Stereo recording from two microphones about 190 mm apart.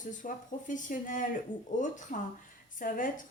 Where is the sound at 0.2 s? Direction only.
45° left (ahead or behind).